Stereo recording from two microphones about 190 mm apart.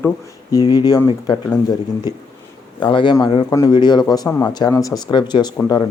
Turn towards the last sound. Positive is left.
turn(degrees=20)  # may be behind; listen again after turning